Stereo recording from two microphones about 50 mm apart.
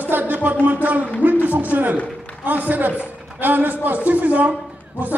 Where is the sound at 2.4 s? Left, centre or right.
Right.